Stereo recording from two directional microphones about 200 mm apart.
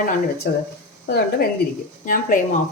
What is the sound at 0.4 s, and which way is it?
A woman's voice, 55° left (ahead or behind).